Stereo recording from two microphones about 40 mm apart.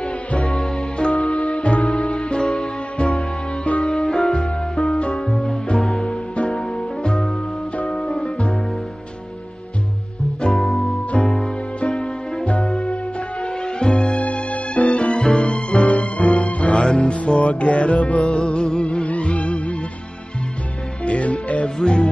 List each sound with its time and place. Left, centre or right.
0.5 s music: centre
3.8 s music: centre
4.4 s music: left
5.7 s music: centre
6.3 s music: left
6.6 s music: centre
10.6 s music: centre
11.2 s music: left
15.1 s music: centre
16.8 s music: left
21.0 s music: left
21.8 s music: left